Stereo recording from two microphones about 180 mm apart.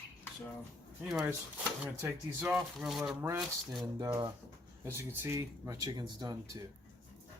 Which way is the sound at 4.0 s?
20° right (ahead or behind).